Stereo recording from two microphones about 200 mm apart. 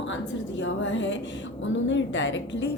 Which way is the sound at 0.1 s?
65° left (ahead or behind).